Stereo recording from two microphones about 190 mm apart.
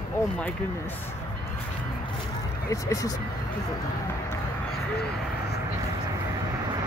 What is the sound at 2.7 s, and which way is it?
Speech, 20° left (ahead or behind).